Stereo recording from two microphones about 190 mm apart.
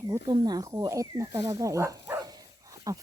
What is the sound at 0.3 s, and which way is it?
Speech, 20° right (ahead or behind).